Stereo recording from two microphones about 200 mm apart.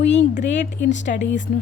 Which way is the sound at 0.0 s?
60° left (ahead or behind).